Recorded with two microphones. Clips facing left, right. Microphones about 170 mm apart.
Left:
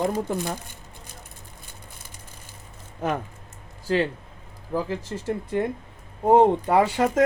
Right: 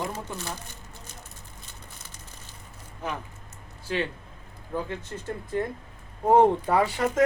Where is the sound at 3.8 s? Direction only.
40° left (ahead or behind).